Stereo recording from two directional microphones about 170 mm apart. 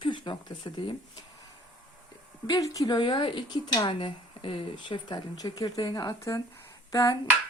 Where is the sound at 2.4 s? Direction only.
20° left (ahead or behind).